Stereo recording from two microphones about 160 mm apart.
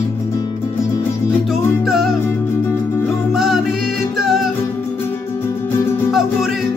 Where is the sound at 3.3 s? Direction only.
Centre (ahead or behind).